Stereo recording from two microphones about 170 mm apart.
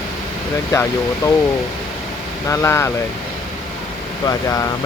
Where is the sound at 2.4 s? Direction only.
15° left (ahead or behind).